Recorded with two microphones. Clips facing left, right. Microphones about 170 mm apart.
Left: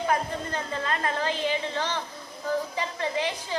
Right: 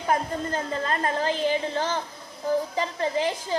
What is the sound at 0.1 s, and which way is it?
A woman's voice, 40° right (ahead or behind).